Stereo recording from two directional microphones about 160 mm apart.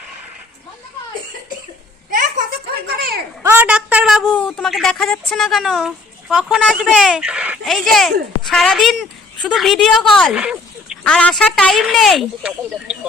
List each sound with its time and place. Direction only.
2.0 s a sound: 55° right (ahead or behind)
3.4 s speech: 10° right (ahead or behind)
4.3 s a woman's voice: 10° left (ahead or behind); by 10.9 s 5° right (ahead or behind)
11.0 s a woman's voice: 5° left (ahead or behind)